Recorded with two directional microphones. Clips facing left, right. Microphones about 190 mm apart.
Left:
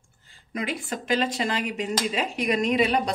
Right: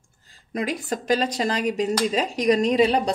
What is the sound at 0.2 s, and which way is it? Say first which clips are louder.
Speech: right 4 dB; 40° right (ahead or behind).